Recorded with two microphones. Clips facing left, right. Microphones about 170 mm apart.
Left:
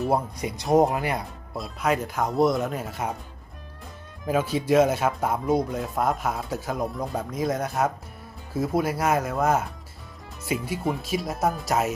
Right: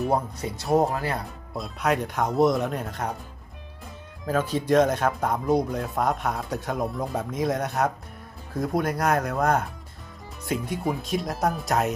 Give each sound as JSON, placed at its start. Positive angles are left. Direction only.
{"t": 0.3, "sound": "speech", "side_deg": 15}
{"t": 1.5, "sound": "speech", "side_deg": 0}
{"t": 4.3, "sound": "speech", "side_deg": 10}